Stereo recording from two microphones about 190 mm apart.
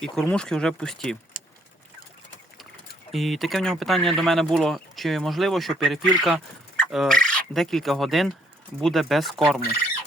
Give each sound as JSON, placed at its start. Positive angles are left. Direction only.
{"t": 0.0, "sound": "speech", "side_deg": 5}
{"t": 3.1, "sound": "speech", "side_deg": 0}